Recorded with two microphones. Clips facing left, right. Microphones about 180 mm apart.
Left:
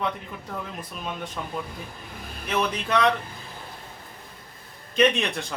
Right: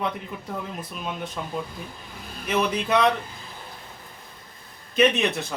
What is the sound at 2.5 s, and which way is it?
Speech, 10° right (ahead or behind).